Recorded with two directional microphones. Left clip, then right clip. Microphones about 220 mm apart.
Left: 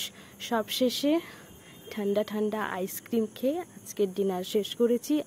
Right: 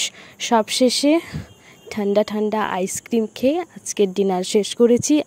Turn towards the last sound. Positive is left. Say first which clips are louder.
# right 10 dB
turn(degrees=-35)  # may be behind; listen again after turning